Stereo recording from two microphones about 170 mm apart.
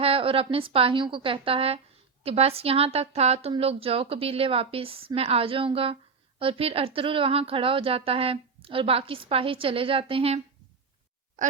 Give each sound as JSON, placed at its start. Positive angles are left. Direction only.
{"t": 0.0, "sound": "a woman's voice", "side_deg": -35}
{"t": 11.4, "sound": "speech", "side_deg": -45}